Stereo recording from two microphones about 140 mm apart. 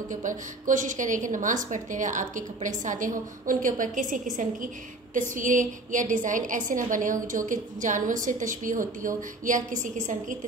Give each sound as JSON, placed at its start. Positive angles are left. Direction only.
{"t": 0.1, "sound": "a woman's voice", "side_deg": -65}